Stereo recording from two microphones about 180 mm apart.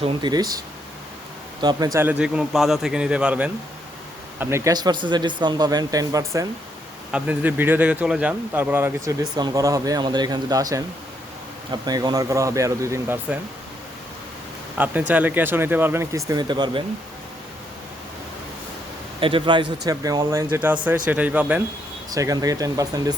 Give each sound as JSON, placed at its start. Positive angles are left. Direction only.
{"t": 0.0, "sound": "speech", "side_deg": -25}
{"t": 1.6, "sound": "speech", "side_deg": -20}
{"t": 14.8, "sound": "speech", "side_deg": -10}
{"t": 19.2, "sound": "speech", "side_deg": -30}
{"t": 22.1, "sound": "speech", "side_deg": -20}